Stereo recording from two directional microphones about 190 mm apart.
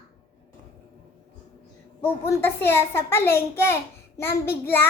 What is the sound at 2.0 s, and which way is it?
A child's voice, 10° left (ahead or behind).